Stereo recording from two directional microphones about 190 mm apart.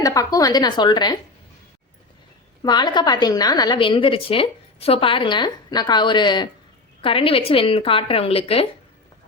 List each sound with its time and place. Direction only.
0.0 s a woman's voice: 20° left (ahead or behind)
2.6 s a woman's voice: 20° left (ahead or behind)